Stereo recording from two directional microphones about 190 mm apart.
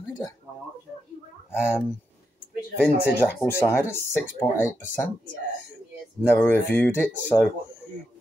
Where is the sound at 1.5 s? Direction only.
5° right (ahead or behind).